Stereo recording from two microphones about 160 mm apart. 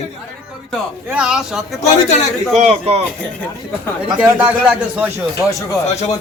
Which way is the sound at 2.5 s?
40° right (ahead or behind).